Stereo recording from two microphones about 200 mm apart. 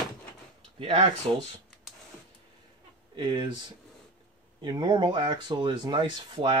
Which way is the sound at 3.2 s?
25° right (ahead or behind).